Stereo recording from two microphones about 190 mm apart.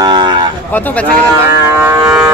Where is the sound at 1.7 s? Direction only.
15° right (ahead or behind).